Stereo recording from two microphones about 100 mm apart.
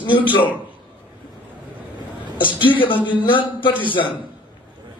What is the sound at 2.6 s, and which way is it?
A man's voice, 55° left (ahead or behind).